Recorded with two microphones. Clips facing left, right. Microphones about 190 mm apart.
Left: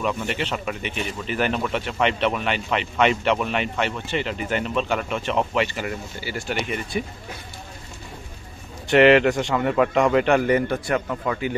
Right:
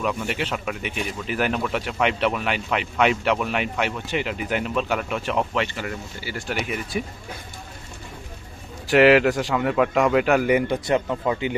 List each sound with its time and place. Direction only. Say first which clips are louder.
0.0 s speech: even; 5° right (ahead or behind)
5.8 s speech: left 2 dB; 15° left (ahead or behind)
6.5 s speech: even; 5° right (ahead or behind)
8.9 s speech: even; centre (ahead or behind)
10.9 s speech: right 2 dB; 20° right (ahead or behind)